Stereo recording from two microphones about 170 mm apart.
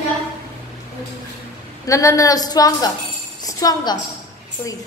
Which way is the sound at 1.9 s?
20° left (ahead or behind).